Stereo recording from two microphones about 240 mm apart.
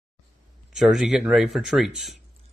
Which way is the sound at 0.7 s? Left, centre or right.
Centre.